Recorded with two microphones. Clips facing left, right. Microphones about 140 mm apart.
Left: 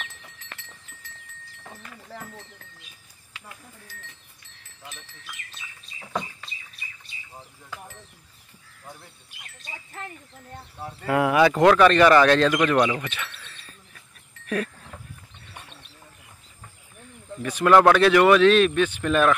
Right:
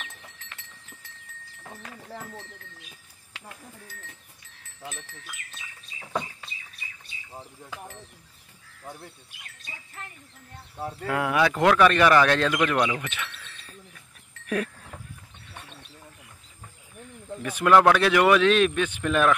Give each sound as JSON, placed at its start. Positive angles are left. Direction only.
{"t": 7.3, "sound": "speech", "side_deg": -15}
{"t": 11.1, "sound": "speech", "side_deg": 10}
{"t": 11.6, "sound": "speech", "side_deg": -5}
{"t": 14.4, "sound": "a sound", "side_deg": -10}
{"t": 17.4, "sound": "speech", "side_deg": -5}